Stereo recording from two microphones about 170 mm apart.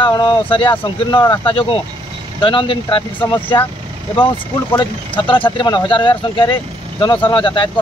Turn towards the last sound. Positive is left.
turn(degrees=30)  # may be behind; listen again after turning